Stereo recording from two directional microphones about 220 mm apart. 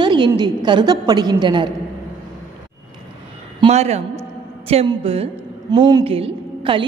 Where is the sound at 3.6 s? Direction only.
30° right (ahead or behind).